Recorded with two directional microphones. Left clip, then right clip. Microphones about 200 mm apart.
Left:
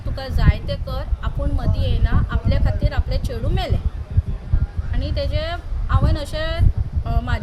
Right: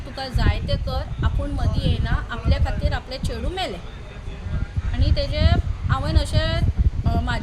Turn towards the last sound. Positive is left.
turn(degrees=0)  # may be behind; listen again after turning